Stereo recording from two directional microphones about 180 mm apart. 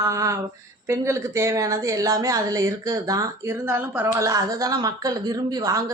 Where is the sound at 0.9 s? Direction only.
15° right (ahead or behind).